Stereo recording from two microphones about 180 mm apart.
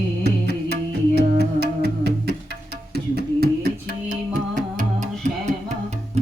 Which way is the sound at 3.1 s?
60° right (ahead or behind).